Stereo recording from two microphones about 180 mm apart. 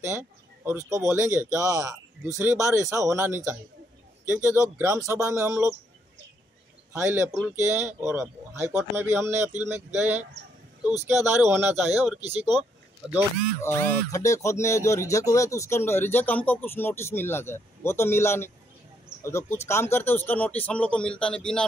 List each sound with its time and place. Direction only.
0.0 s speech: 15° right (ahead or behind)
6.9 s speech: 15° right (ahead or behind)
12.2 s speech: 35° right (ahead or behind)
13.6 s speech: 15° left (ahead or behind)